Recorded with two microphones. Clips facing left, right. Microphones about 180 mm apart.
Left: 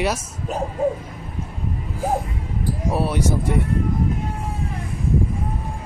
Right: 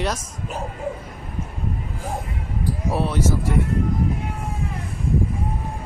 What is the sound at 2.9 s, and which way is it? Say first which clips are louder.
Speech: left 1 dB; centre (ahead or behind).